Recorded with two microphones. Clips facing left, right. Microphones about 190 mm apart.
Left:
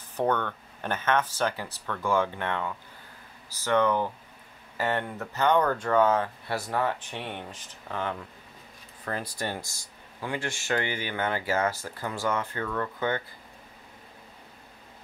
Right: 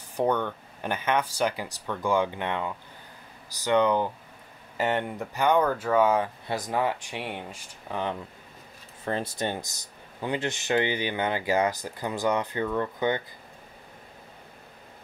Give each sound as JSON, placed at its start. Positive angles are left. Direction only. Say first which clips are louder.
{"t": 0.1, "sound": "speech", "louder": "right 1 dB", "side_deg": -10}